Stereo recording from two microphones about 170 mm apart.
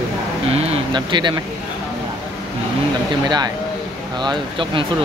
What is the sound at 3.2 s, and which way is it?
Speech, 25° right (ahead or behind).